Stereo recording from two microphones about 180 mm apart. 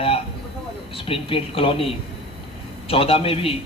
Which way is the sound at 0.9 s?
30° left (ahead or behind).